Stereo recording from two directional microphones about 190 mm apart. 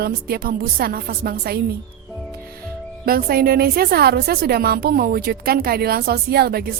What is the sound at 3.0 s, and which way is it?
A woman's voice, 50° right (ahead or behind).